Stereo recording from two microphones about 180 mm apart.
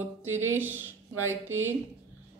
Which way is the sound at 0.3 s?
90° right.